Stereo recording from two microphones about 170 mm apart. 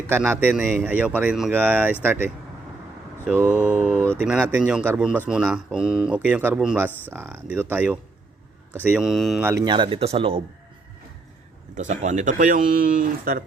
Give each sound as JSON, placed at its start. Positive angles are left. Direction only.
{"t": 0.1, "sound": "a man's voice", "side_deg": -10}
{"t": 3.9, "sound": "speech", "side_deg": 10}
{"t": 4.2, "sound": "a man's voice", "side_deg": -5}
{"t": 9.4, "sound": "speech", "side_deg": -15}
{"t": 9.6, "sound": "speech", "side_deg": -30}
{"t": 11.7, "sound": "speech", "side_deg": -45}